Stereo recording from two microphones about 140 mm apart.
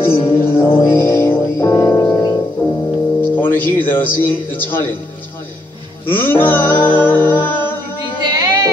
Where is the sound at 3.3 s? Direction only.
15° left (ahead or behind).